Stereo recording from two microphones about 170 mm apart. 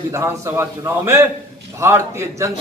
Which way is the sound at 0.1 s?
15° right (ahead or behind).